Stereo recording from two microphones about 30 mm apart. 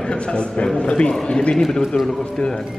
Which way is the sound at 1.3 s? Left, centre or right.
Left.